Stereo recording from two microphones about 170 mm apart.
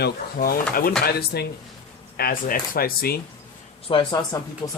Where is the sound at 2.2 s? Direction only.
55° left (ahead or behind).